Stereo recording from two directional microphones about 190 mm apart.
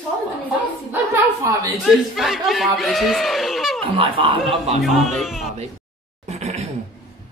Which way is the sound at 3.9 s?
30° right (ahead or behind).